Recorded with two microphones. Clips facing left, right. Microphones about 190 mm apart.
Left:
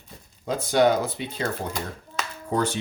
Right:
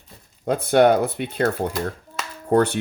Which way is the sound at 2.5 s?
60° right (ahead or behind).